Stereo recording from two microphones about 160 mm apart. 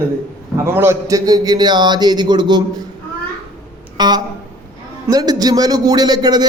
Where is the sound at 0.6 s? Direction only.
15° right (ahead or behind).